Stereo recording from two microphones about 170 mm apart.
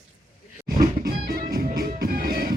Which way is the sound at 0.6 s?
60° right (ahead or behind).